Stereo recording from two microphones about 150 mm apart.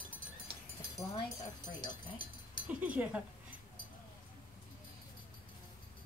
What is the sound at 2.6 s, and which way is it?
Speech, 10° right (ahead or behind).